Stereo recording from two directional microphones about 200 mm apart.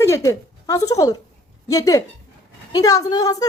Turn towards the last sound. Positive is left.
turn(degrees=15)  # may be behind; listen again after turning